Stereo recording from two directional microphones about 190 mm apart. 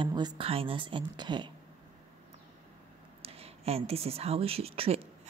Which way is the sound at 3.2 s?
30° right (ahead or behind).